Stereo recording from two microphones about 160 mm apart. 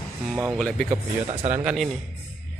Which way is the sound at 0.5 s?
5° left (ahead or behind).